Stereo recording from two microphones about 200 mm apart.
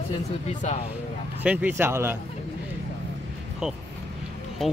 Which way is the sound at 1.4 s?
10° right (ahead or behind).